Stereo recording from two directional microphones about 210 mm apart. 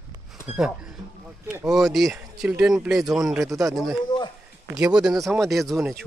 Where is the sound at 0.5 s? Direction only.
5° right (ahead or behind).